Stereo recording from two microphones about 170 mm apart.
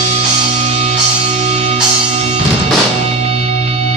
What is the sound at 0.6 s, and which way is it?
Music, 40° right (ahead or behind).